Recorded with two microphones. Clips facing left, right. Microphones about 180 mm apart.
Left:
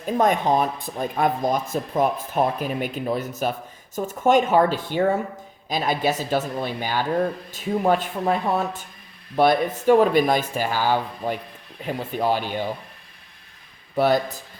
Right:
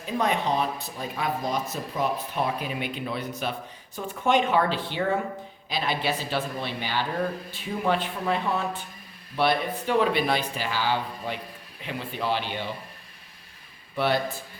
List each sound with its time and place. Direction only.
0.0 s speech: 45° left (ahead or behind)
13.9 s a man's voice: 40° left (ahead or behind)